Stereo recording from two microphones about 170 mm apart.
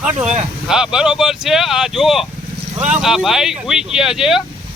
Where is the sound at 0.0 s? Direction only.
10° right (ahead or behind).